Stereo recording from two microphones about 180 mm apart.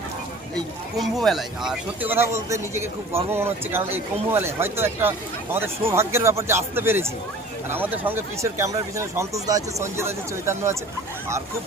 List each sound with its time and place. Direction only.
0.5 s speech: centre (ahead or behind); by 10.8 s 15° right (ahead or behind)